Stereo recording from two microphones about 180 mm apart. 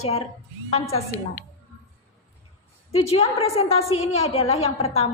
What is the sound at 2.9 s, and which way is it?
A woman's voice, 35° left (ahead or behind).